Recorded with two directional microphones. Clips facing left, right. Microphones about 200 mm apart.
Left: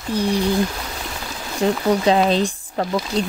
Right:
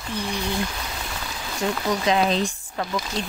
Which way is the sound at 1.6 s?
35° left (ahead or behind).